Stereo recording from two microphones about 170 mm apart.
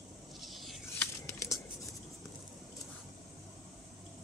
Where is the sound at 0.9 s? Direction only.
15° left (ahead or behind).